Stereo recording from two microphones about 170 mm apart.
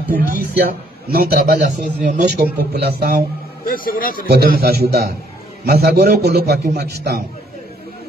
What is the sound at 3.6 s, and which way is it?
Speech, 55° left (ahead or behind).